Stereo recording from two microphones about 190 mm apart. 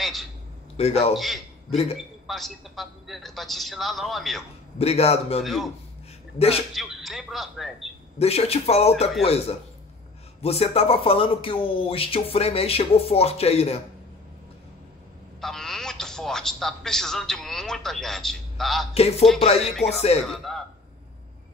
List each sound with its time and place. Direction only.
0.0 s a man's voice: centre (ahead or behind)
0.7 s speech: 30° left (ahead or behind)
1.1 s a man's voice: centre (ahead or behind)
4.7 s speech: 35° left (ahead or behind)
5.4 s a man's voice: centre (ahead or behind)
6.3 s speech: 30° left (ahead or behind)
6.7 s a man's voice: centre (ahead or behind)
8.2 s speech: 30° left (ahead or behind)
15.4 s a man's voice: centre (ahead or behind)
18.9 s speech: 35° left (ahead or behind)
20.2 s a man's voice: centre (ahead or behind)